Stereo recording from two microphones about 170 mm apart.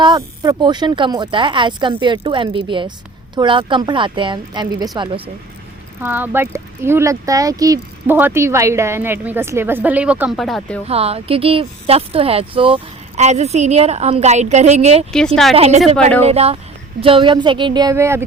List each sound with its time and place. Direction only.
0.0 s speech: 25° right (ahead or behind)
6.0 s speech: 10° right (ahead or behind)
10.8 s speech: 35° right (ahead or behind); by 18.3 s 15° right (ahead or behind)